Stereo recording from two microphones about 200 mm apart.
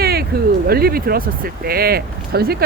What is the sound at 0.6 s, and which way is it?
Speech, 50° right (ahead or behind).